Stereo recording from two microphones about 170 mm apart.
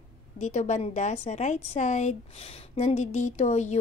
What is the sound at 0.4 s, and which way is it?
A woman's voice, 40° left (ahead or behind).